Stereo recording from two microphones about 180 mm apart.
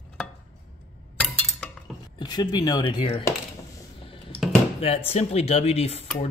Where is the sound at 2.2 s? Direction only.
25° left (ahead or behind).